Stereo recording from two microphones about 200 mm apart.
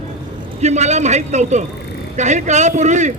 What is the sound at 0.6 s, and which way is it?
A man's voice, 35° right (ahead or behind).